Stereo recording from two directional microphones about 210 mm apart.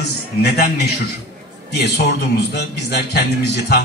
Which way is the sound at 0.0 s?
50° left (ahead or behind).